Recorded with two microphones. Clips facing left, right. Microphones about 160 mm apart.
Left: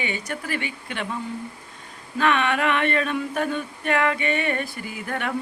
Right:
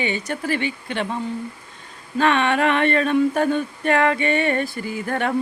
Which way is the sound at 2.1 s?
30° right (ahead or behind).